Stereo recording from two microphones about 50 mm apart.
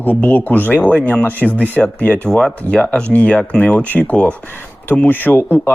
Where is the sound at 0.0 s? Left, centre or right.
Left.